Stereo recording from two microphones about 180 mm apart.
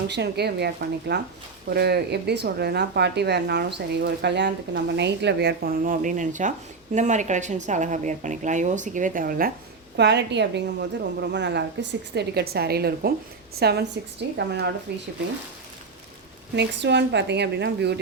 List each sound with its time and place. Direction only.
0.1 s a woman's voice: 70° right (ahead or behind); by 9.5 s 50° right (ahead or behind)
10.0 s a woman's voice: 70° right (ahead or behind)
16.6 s a woman's voice: 75° right (ahead or behind)